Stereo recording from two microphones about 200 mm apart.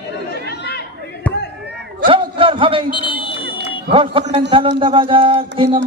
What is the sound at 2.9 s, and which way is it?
Speech, 25° left (ahead or behind).